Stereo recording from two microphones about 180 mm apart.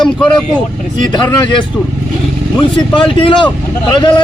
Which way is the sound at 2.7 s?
30° left (ahead or behind).